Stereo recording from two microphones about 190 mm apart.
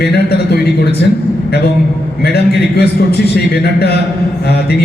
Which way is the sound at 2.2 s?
55° left (ahead or behind).